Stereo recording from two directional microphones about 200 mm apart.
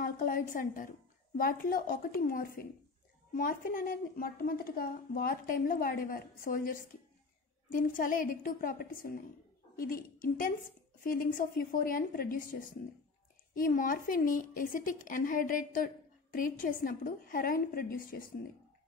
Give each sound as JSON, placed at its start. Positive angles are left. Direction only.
{"t": 0.0, "sound": "speech", "side_deg": 45}